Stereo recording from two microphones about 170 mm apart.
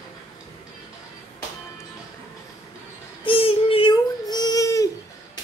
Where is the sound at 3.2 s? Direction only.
35° left (ahead or behind).